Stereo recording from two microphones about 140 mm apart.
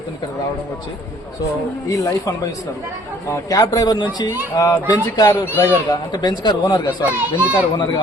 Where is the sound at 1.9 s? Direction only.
25° left (ahead or behind).